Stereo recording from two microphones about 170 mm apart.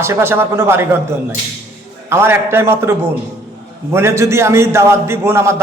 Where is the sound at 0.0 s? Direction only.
15° right (ahead or behind).